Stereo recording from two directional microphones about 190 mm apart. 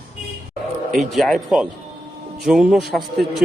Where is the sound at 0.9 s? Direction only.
Centre (ahead or behind).